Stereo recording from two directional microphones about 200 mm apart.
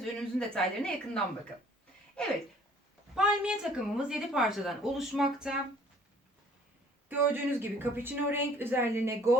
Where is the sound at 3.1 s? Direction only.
5° right (ahead or behind).